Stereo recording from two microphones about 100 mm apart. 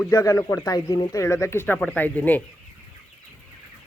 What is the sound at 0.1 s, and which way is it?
Speech, 35° left (ahead or behind).